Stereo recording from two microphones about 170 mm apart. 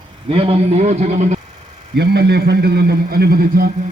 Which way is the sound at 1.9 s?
75° right (ahead or behind).